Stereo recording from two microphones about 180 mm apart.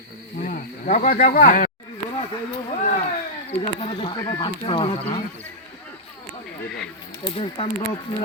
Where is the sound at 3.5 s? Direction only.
30° left (ahead or behind).